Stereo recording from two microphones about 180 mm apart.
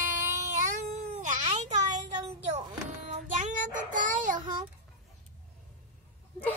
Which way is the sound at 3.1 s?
45° right (ahead or behind).